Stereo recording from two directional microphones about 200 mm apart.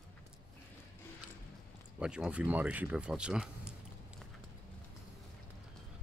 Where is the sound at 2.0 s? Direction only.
5° right (ahead or behind).